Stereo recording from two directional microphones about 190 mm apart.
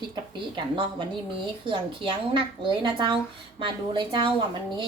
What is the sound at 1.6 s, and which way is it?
A woman's voice, 25° right (ahead or behind).